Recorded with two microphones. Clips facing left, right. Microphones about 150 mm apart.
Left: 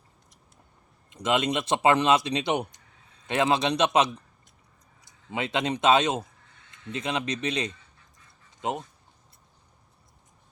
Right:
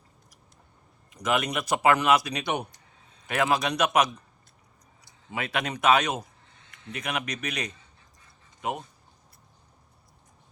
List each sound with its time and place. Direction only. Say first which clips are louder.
1.1 s speech: left 2 dB; 25° left (ahead or behind)